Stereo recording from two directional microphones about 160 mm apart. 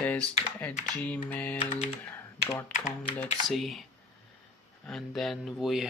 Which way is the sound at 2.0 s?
15° left (ahead or behind).